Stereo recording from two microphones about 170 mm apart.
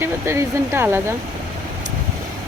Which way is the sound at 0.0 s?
15° right (ahead or behind).